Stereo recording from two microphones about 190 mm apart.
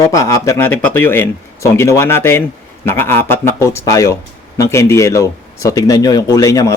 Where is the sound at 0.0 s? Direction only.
15° left (ahead or behind).